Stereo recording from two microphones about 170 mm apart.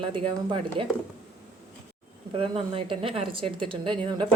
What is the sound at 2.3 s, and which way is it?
A woman's voice, 30° right (ahead or behind).